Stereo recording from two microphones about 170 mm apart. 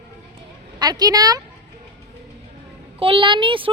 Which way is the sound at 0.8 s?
25° right (ahead or behind).